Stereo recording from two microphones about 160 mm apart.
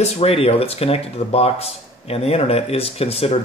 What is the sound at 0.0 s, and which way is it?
Speech, 40° left (ahead or behind).